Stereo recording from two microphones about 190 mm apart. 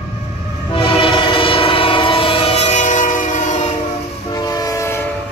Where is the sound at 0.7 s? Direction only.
25° left (ahead or behind).